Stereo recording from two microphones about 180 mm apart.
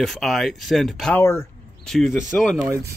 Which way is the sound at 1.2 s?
15° left (ahead or behind).